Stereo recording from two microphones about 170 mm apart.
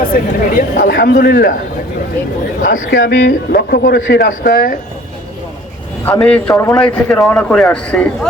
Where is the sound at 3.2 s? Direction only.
60° left (ahead or behind).